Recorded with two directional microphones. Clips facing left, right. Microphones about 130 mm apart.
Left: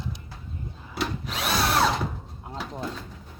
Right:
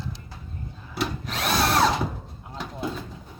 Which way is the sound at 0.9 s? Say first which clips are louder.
Right 1 dB; centre (ahead or behind).